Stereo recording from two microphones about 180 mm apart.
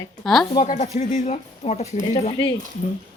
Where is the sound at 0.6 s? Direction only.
40° left (ahead or behind).